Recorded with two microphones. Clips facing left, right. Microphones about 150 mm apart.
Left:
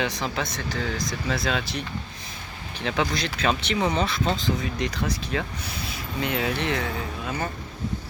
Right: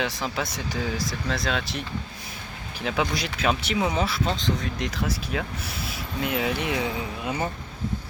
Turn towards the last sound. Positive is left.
turn(degrees=-15)  # may be behind; listen again after turning